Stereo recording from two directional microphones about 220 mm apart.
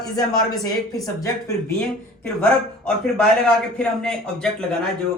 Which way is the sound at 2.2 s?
5° left (ahead or behind).